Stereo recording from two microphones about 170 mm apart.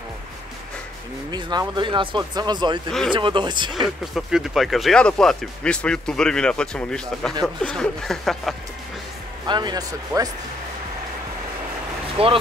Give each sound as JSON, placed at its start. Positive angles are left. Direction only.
{"t": 1.3, "sound": "speech", "side_deg": -25}
{"t": 4.1, "sound": "speech", "side_deg": 0}
{"t": 9.5, "sound": "speech", "side_deg": -25}
{"t": 12.2, "sound": "speech", "side_deg": -35}